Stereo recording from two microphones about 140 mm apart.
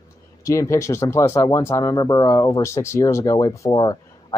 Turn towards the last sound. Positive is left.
turn(degrees=30)  # may be behind; listen again after turning